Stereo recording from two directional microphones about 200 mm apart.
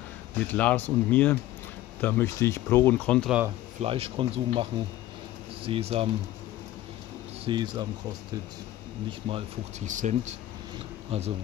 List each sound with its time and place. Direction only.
0.4 s speech: 5° left (ahead or behind)
3.8 s speech: 30° right (ahead or behind)
7.4 s speech: 20° right (ahead or behind)
9.3 s speech: 35° right (ahead or behind)